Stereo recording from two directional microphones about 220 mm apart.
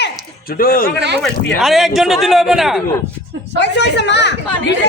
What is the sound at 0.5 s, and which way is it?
Speech, 40° left (ahead or behind).